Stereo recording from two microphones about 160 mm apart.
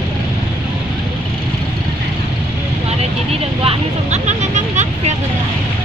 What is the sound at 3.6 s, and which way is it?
Vehicle, 45° right (ahead or behind).